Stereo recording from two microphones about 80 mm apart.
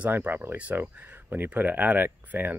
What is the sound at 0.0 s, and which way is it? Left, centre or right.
Speech, right.